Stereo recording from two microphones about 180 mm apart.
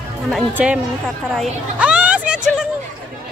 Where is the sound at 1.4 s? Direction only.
5° right (ahead or behind).